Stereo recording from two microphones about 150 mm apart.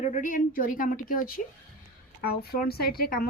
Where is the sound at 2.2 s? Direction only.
85° left.